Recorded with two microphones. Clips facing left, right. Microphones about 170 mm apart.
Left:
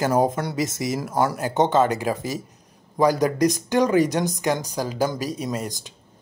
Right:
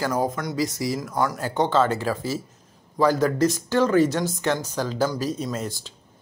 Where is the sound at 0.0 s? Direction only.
25° left (ahead or behind).